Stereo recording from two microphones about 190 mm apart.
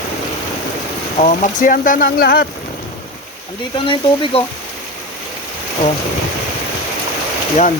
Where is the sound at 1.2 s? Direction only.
45° left (ahead or behind).